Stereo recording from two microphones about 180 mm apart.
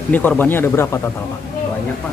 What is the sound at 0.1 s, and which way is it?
Speech, 10° left (ahead or behind).